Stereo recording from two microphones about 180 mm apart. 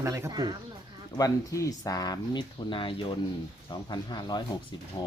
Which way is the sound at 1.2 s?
20° left (ahead or behind).